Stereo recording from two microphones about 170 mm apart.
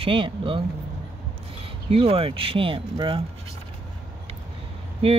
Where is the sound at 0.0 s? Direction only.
30° right (ahead or behind).